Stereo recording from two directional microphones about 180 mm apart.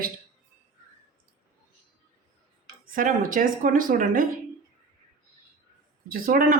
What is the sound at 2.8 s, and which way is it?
Speech, 50° right (ahead or behind).